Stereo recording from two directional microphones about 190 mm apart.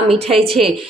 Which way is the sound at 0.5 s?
Centre (ahead or behind).